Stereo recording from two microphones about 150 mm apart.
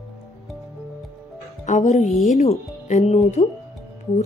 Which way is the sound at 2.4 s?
50° left (ahead or behind).